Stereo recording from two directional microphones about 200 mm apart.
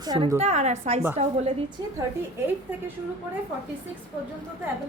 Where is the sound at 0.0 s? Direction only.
20° right (ahead or behind).